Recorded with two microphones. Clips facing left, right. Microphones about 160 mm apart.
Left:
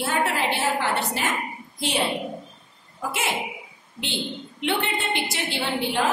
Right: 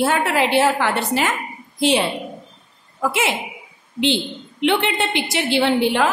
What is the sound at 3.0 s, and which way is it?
A woman's voice, 90° right.